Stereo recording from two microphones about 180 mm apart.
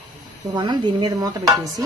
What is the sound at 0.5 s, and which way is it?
Speech, 25° right (ahead or behind).